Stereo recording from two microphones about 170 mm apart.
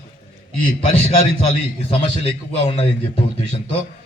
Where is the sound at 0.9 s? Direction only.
35° left (ahead or behind).